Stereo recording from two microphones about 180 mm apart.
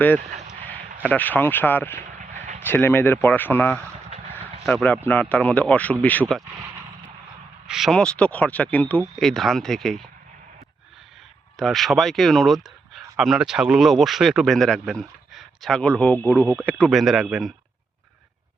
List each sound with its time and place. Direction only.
0.3 s a sound: 35° right (ahead or behind)
1.0 s speech: 10° left (ahead or behind)
2.0 s vehicle: 40° right (ahead or behind)
2.6 s speech: 10° left (ahead or behind)
7.7 s speech: centre (ahead or behind)
11.5 s speech: centre (ahead or behind)